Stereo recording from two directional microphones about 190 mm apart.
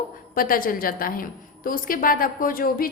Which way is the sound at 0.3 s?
45° left (ahead or behind).